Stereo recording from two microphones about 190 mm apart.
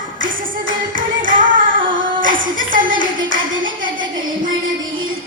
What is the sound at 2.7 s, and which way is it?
Clapping, 45° right (ahead or behind).